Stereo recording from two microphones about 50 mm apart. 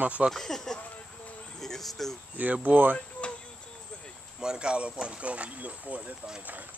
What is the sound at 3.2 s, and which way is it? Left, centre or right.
Cricket, left.